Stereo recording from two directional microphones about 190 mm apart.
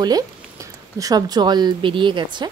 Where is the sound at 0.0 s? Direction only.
20° right (ahead or behind).